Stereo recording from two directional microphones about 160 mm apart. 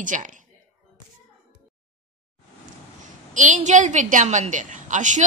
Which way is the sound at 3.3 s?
50° right (ahead or behind).